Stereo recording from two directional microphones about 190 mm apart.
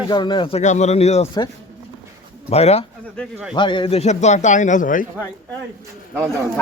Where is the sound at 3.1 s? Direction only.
5° right (ahead or behind).